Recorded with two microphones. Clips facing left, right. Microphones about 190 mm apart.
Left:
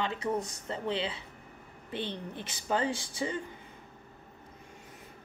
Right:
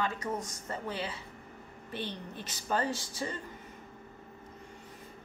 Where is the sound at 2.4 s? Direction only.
20° left (ahead or behind).